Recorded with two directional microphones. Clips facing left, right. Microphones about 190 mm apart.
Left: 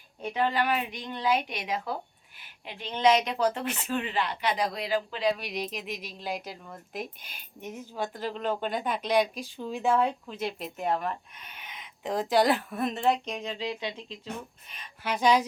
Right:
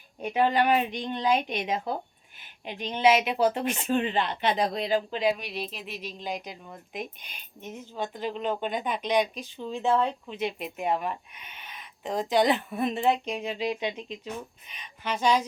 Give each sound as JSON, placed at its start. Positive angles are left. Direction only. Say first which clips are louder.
{"t": 0.2, "sound": "speech", "louder": "right 4 dB", "side_deg": -15}
{"t": 5.4, "sound": "a woman's voice", "louder": "left 1 dB", "side_deg": 10}
{"t": 8.0, "sound": "a woman's voice", "louder": "right 1 dB", "side_deg": -15}
{"t": 8.8, "sound": "a woman's voice", "louder": "left 1 dB", "side_deg": 5}
{"t": 10.4, "sound": "a woman's voice", "louder": "right 2 dB", "side_deg": -10}
{"t": 12.3, "sound": "a woman's voice", "louder": "right 1 dB", "side_deg": 5}
{"t": 14.7, "sound": "speech", "louder": "left 1 dB", "side_deg": 0}
{"t": 15.1, "sound": "a woman's voice", "louder": "left 1 dB", "side_deg": 15}